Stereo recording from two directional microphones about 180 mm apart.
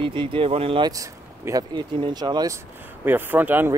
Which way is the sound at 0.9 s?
20° right (ahead or behind).